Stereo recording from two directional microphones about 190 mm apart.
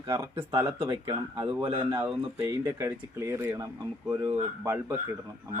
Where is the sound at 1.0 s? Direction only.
25° right (ahead or behind).